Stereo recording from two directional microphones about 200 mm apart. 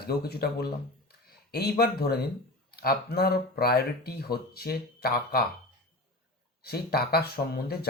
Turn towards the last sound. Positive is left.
turn(degrees=50)  # may be behind; listen again after turning